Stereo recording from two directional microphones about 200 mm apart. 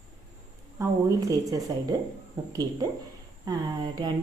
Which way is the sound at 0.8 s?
15° right (ahead or behind).